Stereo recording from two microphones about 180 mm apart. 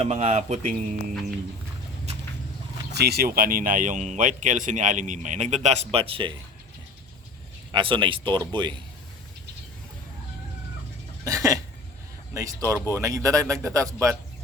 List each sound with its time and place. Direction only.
0.0 s speech: 35° right (ahead or behind)
2.9 s speech: 60° right (ahead or behind); by 6.3 s 30° right (ahead or behind)
7.7 s speech: 25° right (ahead or behind)
11.3 s speech: 15° right (ahead or behind)